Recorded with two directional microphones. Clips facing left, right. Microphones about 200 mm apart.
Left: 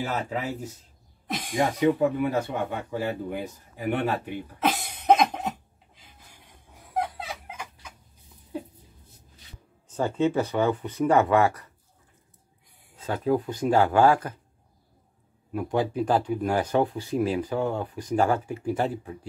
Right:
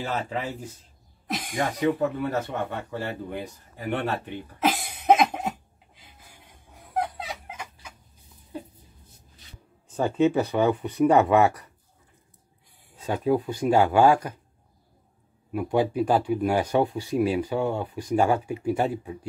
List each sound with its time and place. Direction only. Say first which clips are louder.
0.0 s speech: even; 5° left (ahead or behind)
4.6 s cough: right 1 dB; 5° right (ahead or behind)
6.9 s a sound: right 1 dB; centre (ahead or behind)
9.9 s speech: right 2 dB; 15° right (ahead or behind)
13.0 s speech: right 1 dB; 15° right (ahead or behind)
15.5 s speech: right 2 dB; 15° right (ahead or behind)